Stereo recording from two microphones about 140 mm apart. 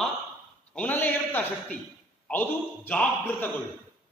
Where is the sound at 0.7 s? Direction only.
10° left (ahead or behind).